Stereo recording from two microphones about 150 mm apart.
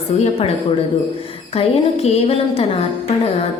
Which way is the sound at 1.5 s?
45° left (ahead or behind).